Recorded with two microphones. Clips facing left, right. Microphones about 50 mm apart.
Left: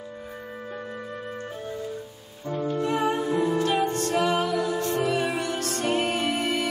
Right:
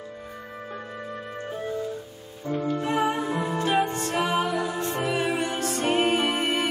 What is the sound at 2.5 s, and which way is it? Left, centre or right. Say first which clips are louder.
Music: even; centre.